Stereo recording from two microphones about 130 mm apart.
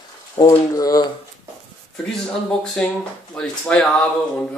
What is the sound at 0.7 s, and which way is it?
Speech, 30° left (ahead or behind).